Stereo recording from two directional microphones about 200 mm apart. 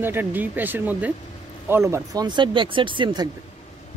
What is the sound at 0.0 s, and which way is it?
Speech, 10° right (ahead or behind).